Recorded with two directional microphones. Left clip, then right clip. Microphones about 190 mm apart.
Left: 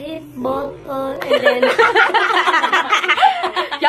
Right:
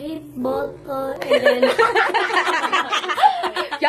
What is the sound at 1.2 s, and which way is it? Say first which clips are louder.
Speech: left 2 dB; centre (ahead or behind).